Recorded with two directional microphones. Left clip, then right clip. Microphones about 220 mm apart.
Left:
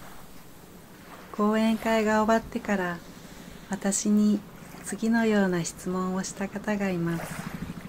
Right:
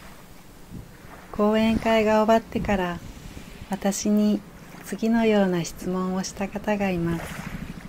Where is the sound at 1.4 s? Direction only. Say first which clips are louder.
Right 4 dB; 10° right (ahead or behind).